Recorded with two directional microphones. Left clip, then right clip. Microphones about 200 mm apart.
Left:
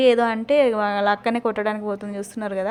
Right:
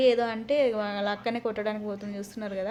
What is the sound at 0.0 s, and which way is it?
A woman's voice, 30° left (ahead or behind).